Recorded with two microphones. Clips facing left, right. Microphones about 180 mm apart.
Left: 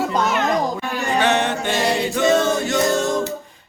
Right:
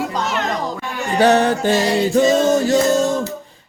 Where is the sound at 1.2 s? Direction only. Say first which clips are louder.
Right 7 dB; 35° right (ahead or behind).